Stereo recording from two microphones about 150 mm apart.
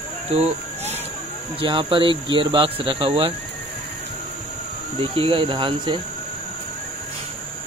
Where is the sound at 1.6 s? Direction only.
35° right (ahead or behind).